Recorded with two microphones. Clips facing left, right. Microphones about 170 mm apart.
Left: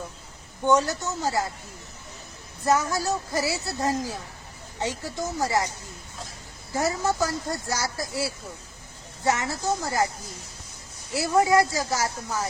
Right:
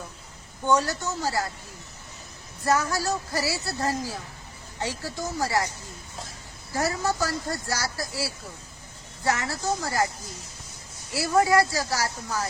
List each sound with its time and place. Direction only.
0.6 s speech: 20° left (ahead or behind)
2.6 s speech: 20° left (ahead or behind)
6.7 s speech: 20° left (ahead or behind)
11.1 s speech: 20° left (ahead or behind)